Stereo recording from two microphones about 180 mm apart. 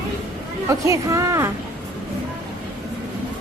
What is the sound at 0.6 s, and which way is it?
Speech, 15° right (ahead or behind).